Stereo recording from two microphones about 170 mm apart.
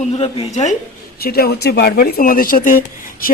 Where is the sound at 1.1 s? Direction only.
65° left (ahead or behind).